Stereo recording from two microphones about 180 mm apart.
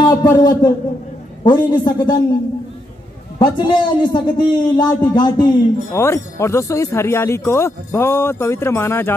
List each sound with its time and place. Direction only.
0.0 s a man's voice: 20° left (ahead or behind)
3.3 s a man's voice: 25° left (ahead or behind)